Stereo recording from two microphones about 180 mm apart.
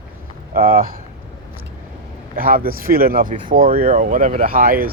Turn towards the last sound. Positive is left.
turn(degrees=-50)  # may be behind; listen again after turning